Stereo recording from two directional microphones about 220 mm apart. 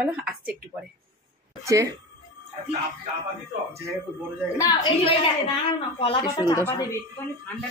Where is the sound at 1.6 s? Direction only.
15° right (ahead or behind).